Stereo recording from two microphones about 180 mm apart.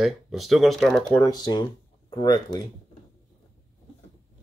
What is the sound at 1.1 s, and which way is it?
Speech, 20° left (ahead or behind).